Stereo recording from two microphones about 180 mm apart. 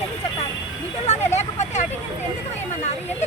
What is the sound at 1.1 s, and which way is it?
Speech, 40° left (ahead or behind).